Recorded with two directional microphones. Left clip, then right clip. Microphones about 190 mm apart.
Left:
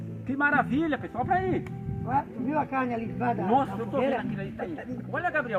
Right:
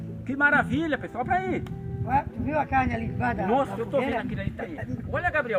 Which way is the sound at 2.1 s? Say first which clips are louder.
Right 2 dB; 45° right (ahead or behind).